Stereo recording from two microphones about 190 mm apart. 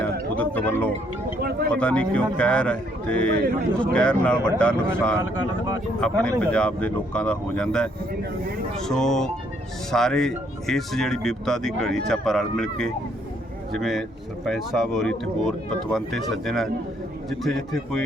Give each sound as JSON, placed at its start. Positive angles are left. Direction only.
{"t": 0.0, "sound": "a sound", "side_deg": 10}
{"t": 1.7, "sound": "a man's voice", "side_deg": 5}
{"t": 5.2, "sound": "speech", "side_deg": -20}
{"t": 6.0, "sound": "a man's voice", "side_deg": 5}